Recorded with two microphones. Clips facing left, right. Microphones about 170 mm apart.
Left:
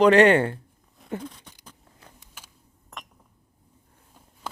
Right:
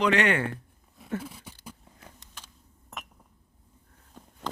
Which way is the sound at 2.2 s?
10° left (ahead or behind).